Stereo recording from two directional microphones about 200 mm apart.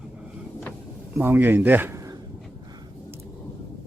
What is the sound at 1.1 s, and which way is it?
Speech, 10° right (ahead or behind).